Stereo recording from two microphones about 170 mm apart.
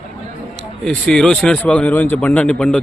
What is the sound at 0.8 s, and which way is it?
Speech, 5° left (ahead or behind).